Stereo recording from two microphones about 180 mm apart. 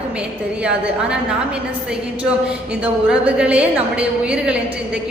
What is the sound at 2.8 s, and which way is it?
A woman's voice, 5° right (ahead or behind).